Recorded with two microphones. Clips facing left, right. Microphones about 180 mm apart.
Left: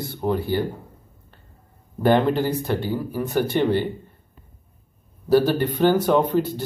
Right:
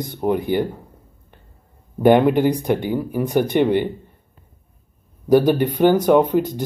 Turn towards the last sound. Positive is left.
turn(degrees=-10)  # may be behind; listen again after turning